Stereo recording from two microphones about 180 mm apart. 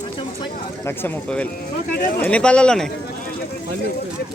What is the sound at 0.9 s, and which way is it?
Speech, 10° left (ahead or behind).